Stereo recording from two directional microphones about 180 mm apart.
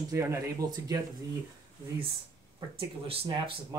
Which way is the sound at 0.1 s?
15° right (ahead or behind).